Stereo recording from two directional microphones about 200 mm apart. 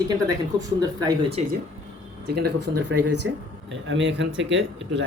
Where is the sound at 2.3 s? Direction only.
55° right (ahead or behind).